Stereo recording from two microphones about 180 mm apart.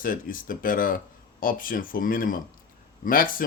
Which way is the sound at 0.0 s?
50° left (ahead or behind).